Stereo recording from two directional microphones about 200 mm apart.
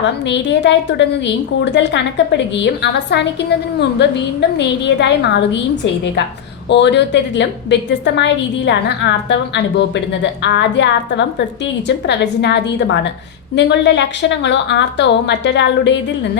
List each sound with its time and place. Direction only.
0.3 s a woman's voice: 60° left (ahead or behind)